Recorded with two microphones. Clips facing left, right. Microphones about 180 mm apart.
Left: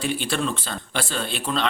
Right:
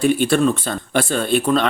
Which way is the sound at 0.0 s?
50° right (ahead or behind).